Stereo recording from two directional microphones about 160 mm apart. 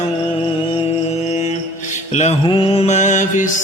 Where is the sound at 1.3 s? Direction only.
45° left (ahead or behind).